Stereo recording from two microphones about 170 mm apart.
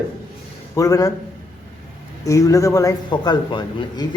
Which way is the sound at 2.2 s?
20° left (ahead or behind).